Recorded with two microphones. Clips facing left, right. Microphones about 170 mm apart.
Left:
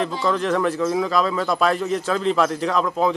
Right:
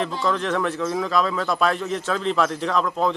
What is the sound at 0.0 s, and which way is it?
Speech, centre (ahead or behind).